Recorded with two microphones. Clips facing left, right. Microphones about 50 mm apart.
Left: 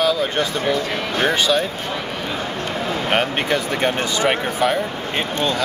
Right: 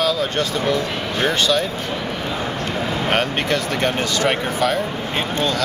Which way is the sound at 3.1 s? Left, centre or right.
Centre.